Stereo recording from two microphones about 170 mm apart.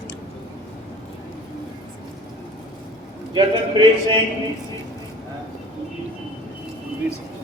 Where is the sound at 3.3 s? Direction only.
25° right (ahead or behind).